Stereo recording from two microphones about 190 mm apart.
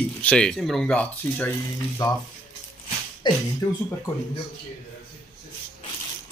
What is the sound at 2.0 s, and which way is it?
Speech, 20° left (ahead or behind).